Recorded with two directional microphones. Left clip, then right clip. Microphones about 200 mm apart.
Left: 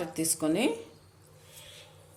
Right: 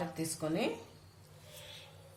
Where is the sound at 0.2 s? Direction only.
50° left (ahead or behind).